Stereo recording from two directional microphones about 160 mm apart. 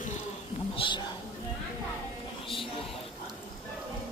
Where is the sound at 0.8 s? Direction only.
35° left (ahead or behind).